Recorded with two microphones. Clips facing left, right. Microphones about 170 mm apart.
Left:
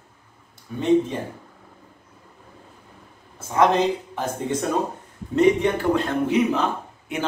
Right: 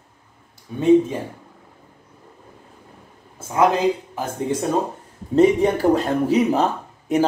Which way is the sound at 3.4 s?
10° right (ahead or behind).